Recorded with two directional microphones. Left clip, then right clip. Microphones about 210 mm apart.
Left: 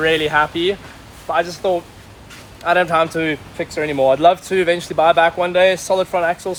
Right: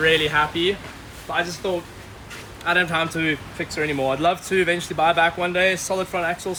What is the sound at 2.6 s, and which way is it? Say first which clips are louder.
Speech: left 6 dB; 5° right (ahead or behind).